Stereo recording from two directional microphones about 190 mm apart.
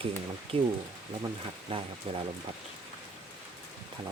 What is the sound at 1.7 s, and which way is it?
Speech, 30° right (ahead or behind).